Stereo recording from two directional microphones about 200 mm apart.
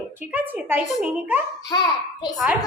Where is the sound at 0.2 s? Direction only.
10° right (ahead or behind).